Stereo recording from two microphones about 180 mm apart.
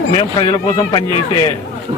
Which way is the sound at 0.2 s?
25° left (ahead or behind).